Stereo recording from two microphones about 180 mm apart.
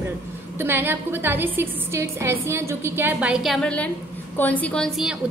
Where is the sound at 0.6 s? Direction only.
10° right (ahead or behind).